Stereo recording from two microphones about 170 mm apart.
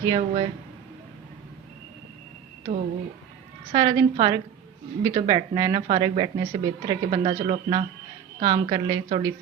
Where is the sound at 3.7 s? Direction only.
25° right (ahead or behind).